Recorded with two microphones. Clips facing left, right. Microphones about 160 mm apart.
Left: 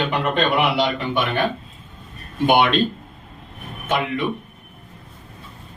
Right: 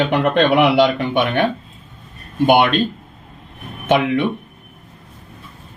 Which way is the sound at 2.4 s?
50° right (ahead or behind).